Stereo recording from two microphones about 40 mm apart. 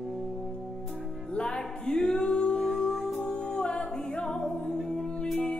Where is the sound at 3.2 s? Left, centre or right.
Left.